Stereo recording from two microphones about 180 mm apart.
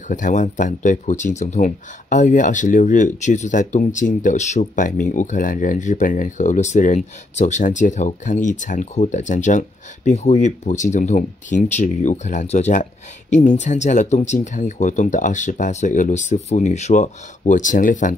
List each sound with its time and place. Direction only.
0.1 s speech: 45° left (ahead or behind)